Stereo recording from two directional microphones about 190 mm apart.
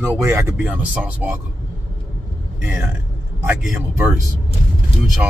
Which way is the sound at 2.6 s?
Centre (ahead or behind).